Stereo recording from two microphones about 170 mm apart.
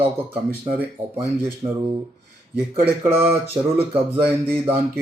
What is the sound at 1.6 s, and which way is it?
Speech, 25° right (ahead or behind).